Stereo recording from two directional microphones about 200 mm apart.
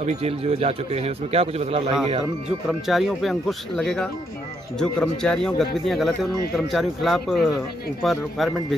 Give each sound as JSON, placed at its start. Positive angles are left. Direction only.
{"t": 0.0, "sound": "a man's voice", "side_deg": -30}
{"t": 2.9, "sound": "speech", "side_deg": 0}